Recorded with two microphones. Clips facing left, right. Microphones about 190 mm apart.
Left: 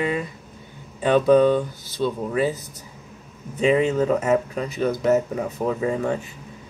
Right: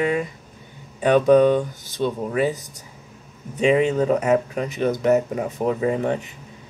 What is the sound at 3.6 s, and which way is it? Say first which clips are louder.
Speech: right 1 dB; 20° right (ahead or behind).